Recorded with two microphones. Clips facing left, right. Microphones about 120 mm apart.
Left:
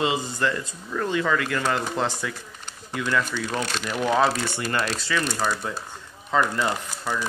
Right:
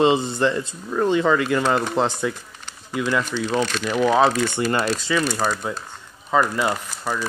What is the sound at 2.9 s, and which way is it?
Speech, 10° right (ahead or behind).